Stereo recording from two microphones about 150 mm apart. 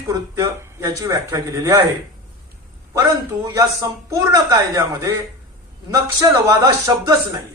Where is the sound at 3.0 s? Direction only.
20° right (ahead or behind).